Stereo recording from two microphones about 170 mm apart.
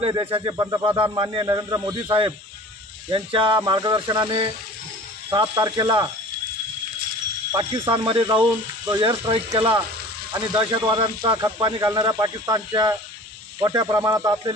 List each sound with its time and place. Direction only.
0.1 s speech: 25° right (ahead or behind)
7.9 s speech: 30° right (ahead or behind)